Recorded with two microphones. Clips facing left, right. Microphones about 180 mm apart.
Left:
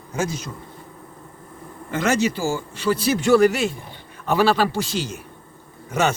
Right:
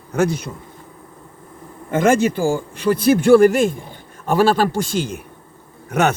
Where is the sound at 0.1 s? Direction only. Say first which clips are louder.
Right 7 dB; 60° right (ahead or behind).